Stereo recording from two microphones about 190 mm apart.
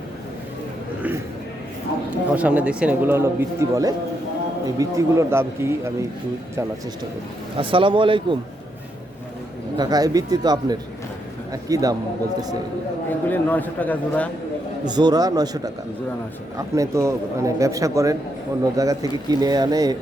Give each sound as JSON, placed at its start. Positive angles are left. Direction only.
{"t": 2.3, "sound": "speech", "side_deg": -10}
{"t": 7.5, "sound": "speech", "side_deg": -30}
{"t": 9.7, "sound": "speech", "side_deg": -20}
{"t": 13.1, "sound": "a man's voice", "side_deg": 10}
{"t": 14.8, "sound": "speech", "side_deg": -20}